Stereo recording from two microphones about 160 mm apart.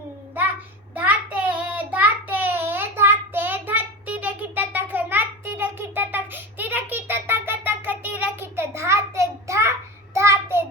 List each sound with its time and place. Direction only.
0.9 s child singing: 10° right (ahead or behind)